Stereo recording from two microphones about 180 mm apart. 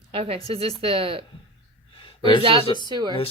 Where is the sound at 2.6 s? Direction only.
25° left (ahead or behind).